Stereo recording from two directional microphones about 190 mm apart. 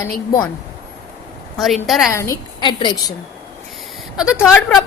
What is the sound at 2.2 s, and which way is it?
Speech, 20° left (ahead or behind).